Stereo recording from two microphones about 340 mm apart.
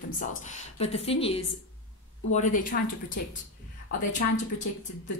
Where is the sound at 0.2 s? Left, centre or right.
Left.